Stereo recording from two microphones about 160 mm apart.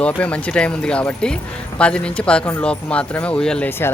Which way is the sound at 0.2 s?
10° left (ahead or behind).